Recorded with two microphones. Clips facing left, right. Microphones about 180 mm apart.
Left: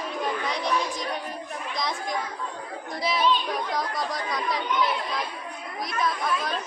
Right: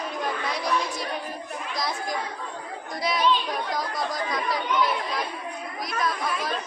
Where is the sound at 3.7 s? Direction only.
Centre (ahead or behind).